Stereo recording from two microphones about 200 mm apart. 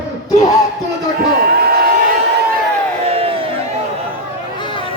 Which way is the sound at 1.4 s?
50° right (ahead or behind).